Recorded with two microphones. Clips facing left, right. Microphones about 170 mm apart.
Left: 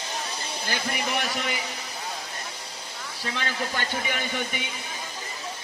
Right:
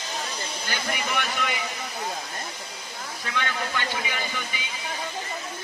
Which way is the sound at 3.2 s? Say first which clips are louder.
Even; 30° left (ahead or behind).